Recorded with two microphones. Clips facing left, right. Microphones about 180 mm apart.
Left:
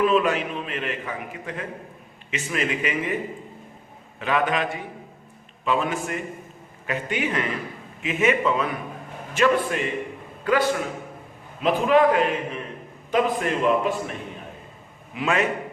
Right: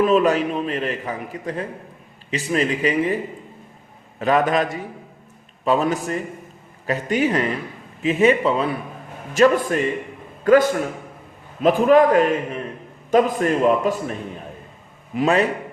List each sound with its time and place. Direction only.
0.0 s a man's voice: 40° right (ahead or behind)
4.2 s a man's voice: 40° right (ahead or behind)
15.1 s a man's voice: 35° right (ahead or behind)